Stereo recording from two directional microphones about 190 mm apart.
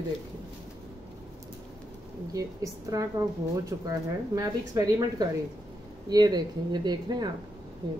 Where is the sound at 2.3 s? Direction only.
20° right (ahead or behind).